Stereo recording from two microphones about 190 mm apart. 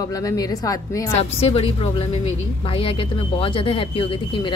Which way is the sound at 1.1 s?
35° left (ahead or behind).